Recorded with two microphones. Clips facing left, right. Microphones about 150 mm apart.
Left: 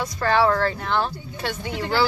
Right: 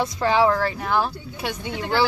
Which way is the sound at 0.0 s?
15° right (ahead or behind).